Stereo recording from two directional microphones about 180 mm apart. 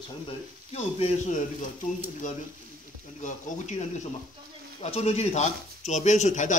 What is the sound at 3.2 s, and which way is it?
Speech, 45° left (ahead or behind).